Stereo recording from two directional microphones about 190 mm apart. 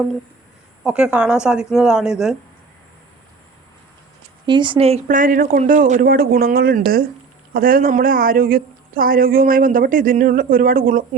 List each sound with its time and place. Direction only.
0.9 s speech: 5° right (ahead or behind)
4.4 s a woman's voice: 25° right (ahead or behind)
5.0 s speech: 45° right (ahead or behind)